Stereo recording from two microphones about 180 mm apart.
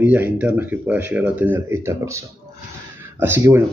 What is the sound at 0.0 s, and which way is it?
Speech, 10° right (ahead or behind).